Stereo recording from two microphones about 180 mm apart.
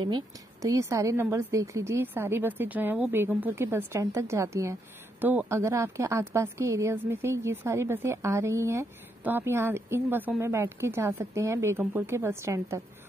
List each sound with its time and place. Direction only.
0.0 s a woman's voice: 20° right (ahead or behind)